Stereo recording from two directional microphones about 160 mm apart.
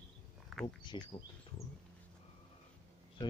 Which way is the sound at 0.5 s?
Centre (ahead or behind).